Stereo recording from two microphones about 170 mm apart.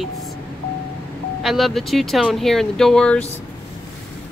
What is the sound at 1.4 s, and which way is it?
A woman's voice, centre (ahead or behind).